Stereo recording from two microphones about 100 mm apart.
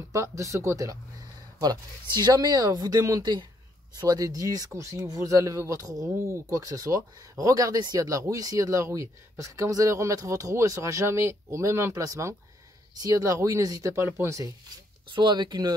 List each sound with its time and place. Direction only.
0.1 s speech: 30° right (ahead or behind)
1.6 s speech: 45° right (ahead or behind)
3.2 s speech: 45° right (ahead or behind); by 14.5 s 30° right (ahead or behind)
15.1 s speech: 50° right (ahead or behind)